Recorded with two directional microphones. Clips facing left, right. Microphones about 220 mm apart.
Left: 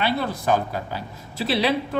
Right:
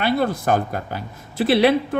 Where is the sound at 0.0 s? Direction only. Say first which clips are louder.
Right 4 dB; 50° right (ahead or behind).